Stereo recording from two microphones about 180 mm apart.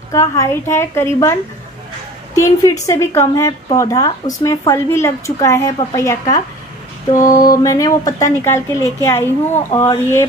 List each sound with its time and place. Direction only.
0.1 s speech: 15° left (ahead or behind)
2.3 s speech: 15° left (ahead or behind)
7.2 s mantra: 45° left (ahead or behind)
7.5 s speech: 20° left (ahead or behind)